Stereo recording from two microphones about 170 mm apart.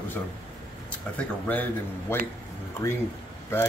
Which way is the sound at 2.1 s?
15° left (ahead or behind).